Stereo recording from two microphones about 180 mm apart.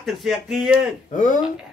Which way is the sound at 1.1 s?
45° left (ahead or behind).